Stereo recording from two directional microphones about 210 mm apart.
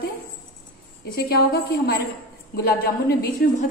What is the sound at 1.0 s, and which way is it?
Speech, 45° left (ahead or behind).